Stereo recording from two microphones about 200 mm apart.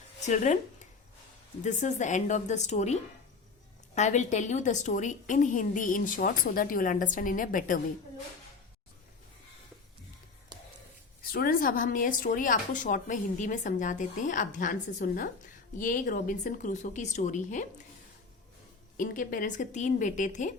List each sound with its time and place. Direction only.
0.3 s speech: 35° left (ahead or behind)
1.6 s speech: 35° left (ahead or behind)
10.5 s a sound: 20° right (ahead or behind)
11.3 s speech: 45° left (ahead or behind)
18.9 s speech: 40° left (ahead or behind)